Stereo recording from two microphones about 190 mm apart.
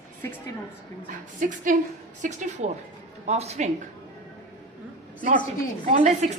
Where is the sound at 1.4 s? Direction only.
45° right (ahead or behind).